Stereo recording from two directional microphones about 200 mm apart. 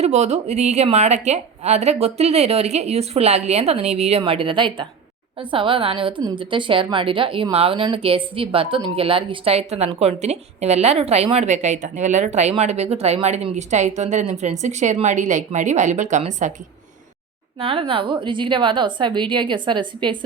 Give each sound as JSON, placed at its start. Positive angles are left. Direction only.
{"t": 0.0, "sound": "a woman's voice", "side_deg": -35}
{"t": 17.6, "sound": "a woman's voice", "side_deg": -25}